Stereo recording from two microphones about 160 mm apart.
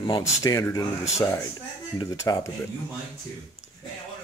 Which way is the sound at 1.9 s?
25° left (ahead or behind).